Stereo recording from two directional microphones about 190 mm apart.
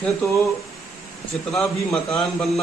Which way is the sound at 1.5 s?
5° left (ahead or behind).